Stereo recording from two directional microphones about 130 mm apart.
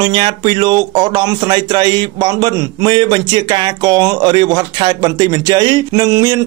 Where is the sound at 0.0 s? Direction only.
35° right (ahead or behind).